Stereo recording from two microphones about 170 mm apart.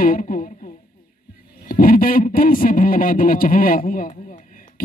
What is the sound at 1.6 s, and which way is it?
Speech, 55° left (ahead or behind).